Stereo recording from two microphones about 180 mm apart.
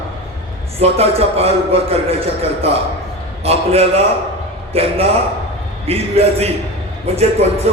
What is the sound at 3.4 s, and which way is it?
A man's voice, 35° right (ahead or behind).